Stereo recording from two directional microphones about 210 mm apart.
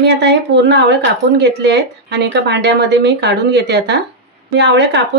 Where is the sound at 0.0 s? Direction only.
55° right (ahead or behind).